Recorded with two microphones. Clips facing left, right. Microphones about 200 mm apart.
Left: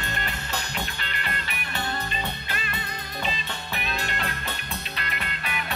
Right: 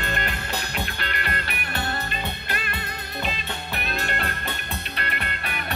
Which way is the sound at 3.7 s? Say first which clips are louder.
Right 2 dB; 55° right (ahead or behind).